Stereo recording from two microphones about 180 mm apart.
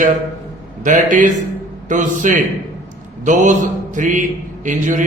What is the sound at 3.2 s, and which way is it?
Mantra, 45° right (ahead or behind).